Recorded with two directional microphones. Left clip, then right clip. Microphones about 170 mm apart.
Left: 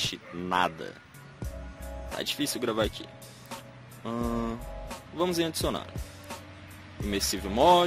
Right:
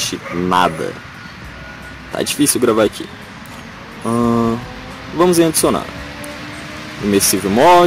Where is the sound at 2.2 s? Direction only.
10° left (ahead or behind).